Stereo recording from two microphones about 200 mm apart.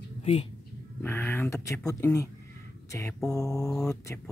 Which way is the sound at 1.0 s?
15° left (ahead or behind).